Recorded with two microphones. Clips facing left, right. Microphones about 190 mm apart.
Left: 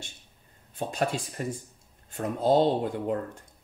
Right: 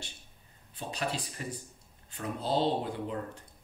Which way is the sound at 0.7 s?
50° left (ahead or behind).